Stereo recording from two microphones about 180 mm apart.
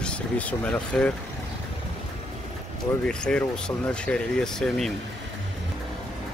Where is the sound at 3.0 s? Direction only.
5° left (ahead or behind).